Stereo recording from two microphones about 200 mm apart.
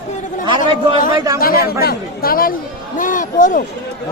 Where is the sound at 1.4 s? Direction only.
50° left (ahead or behind).